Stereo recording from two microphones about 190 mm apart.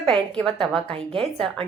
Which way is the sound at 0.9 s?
30° right (ahead or behind).